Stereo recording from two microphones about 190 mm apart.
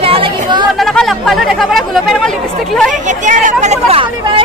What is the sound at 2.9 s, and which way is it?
Speech, 40° right (ahead or behind).